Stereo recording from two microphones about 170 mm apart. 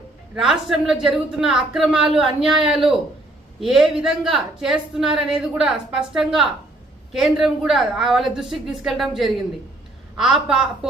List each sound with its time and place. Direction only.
0.3 s speech: 5° right (ahead or behind)